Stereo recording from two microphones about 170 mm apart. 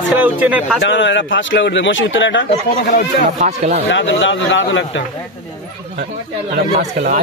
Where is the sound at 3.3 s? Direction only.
45° right (ahead or behind).